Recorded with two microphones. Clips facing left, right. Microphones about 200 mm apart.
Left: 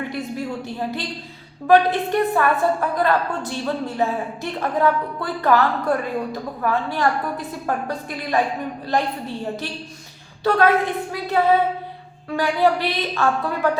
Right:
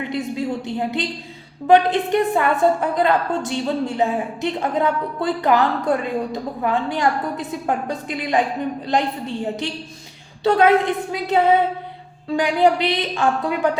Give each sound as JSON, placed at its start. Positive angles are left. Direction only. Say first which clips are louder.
{"t": 0.0, "sound": "a woman's voice", "louder": "right 3 dB", "side_deg": -20}